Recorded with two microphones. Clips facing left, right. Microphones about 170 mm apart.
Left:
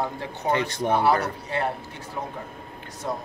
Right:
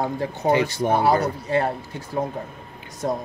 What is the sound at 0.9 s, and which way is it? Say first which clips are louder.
Speech: right 1 dB; 40° right (ahead or behind).